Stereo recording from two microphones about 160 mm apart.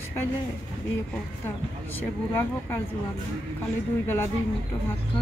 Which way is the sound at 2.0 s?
15° left (ahead or behind).